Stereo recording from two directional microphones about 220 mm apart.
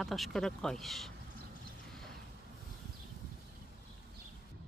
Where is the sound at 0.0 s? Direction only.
Centre (ahead or behind).